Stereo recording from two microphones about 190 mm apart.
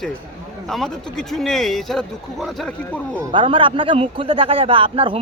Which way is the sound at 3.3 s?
25° right (ahead or behind).